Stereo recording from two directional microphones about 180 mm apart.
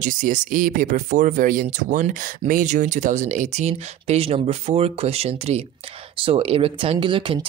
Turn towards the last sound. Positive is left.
turn(degrees=-30)  # may be behind; listen again after turning